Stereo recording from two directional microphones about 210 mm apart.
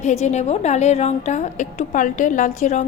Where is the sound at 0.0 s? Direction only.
30° left (ahead or behind).